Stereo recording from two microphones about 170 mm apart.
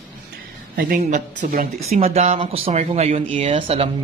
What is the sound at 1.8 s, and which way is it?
Speech, 40° right (ahead or behind).